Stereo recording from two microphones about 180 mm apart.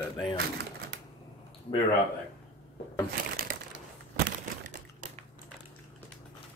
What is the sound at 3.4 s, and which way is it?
Crushing, 50° right (ahead or behind).